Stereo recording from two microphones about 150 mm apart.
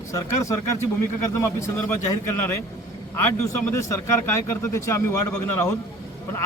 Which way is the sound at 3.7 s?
20° left (ahead or behind).